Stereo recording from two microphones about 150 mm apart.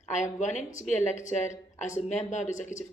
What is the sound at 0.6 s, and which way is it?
A woman's voice, 55° left (ahead or behind).